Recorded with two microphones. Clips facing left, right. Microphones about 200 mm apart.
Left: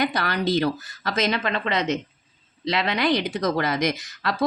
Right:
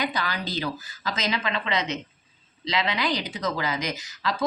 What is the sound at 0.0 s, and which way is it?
Speech, 60° left (ahead or behind).